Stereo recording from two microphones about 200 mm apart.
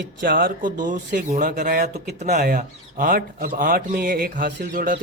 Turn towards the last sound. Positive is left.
turn(degrees=-45)  # may be behind; listen again after turning